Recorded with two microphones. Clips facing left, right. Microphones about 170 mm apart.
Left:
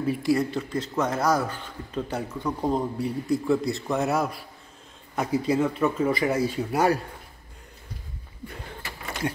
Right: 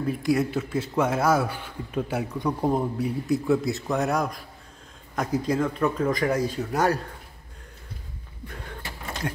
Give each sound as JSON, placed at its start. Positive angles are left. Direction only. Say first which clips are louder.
{"t": 0.0, "sound": "speech", "louder": "even", "side_deg": 0}